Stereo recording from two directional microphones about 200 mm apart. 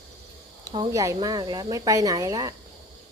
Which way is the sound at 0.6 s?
20° right (ahead or behind).